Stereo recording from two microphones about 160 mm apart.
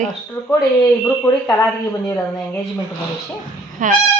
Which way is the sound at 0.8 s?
15° left (ahead or behind).